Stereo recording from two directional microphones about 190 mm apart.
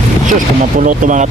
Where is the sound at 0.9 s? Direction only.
40° right (ahead or behind).